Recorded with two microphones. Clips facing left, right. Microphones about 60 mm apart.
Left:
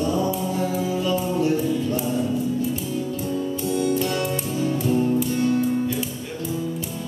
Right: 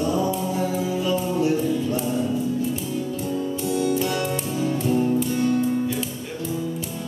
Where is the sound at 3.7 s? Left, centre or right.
Centre.